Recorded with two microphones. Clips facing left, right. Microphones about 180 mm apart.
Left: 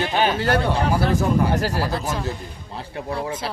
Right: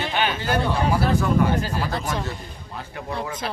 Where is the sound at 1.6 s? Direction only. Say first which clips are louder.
Left 4 dB; 80° left.